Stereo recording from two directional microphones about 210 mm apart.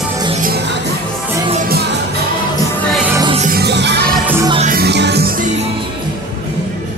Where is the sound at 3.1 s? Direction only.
15° right (ahead or behind).